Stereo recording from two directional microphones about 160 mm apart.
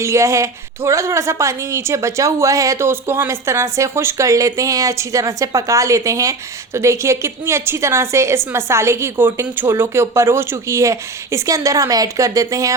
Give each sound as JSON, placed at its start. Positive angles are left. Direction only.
{"t": 0.0, "sound": "a woman's voice", "side_deg": -20}